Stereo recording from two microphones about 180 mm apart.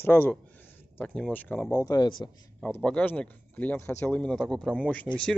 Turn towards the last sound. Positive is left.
turn(degrees=5)  # may be behind; listen again after turning